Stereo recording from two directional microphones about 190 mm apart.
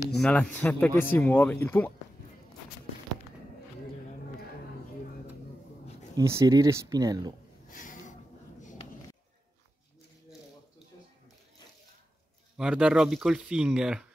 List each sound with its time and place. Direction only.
0.2 s a man's voice: 5° left (ahead or behind)
6.1 s speech: 15° right (ahead or behind)
7.7 s a sound: 45° left (ahead or behind)
12.5 s speech: 5° right (ahead or behind)